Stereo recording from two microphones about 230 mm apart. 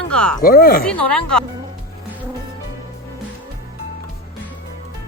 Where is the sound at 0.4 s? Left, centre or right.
Left.